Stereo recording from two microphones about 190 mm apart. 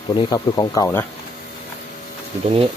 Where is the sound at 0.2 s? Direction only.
20° left (ahead or behind).